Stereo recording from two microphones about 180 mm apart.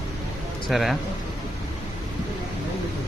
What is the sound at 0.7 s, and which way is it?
Speech, centre (ahead or behind).